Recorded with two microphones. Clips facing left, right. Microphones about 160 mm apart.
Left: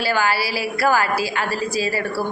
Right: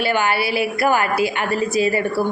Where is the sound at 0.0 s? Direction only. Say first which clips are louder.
Right 1 dB; 20° right (ahead or behind).